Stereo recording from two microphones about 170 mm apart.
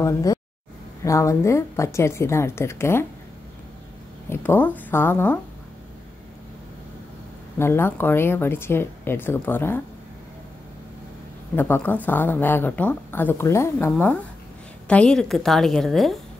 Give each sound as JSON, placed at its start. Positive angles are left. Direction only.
{"t": 0.0, "sound": "speech", "side_deg": 20}
{"t": 4.3, "sound": "speech", "side_deg": 10}
{"t": 7.5, "sound": "speech", "side_deg": 15}
{"t": 11.5, "sound": "a woman's voice", "side_deg": 10}